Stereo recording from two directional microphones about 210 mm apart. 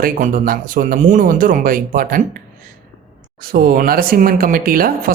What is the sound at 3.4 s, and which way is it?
Speech, 45° right (ahead or behind).